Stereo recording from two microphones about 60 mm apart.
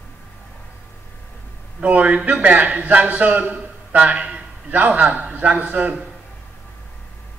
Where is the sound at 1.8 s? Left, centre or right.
Right.